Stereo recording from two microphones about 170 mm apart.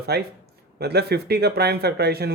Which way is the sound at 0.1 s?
70° right (ahead or behind).